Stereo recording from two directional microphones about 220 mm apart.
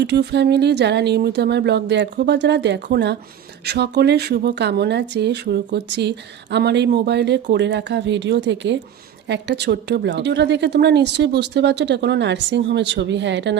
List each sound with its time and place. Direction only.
0.0 s a woman's voice: 50° right (ahead or behind)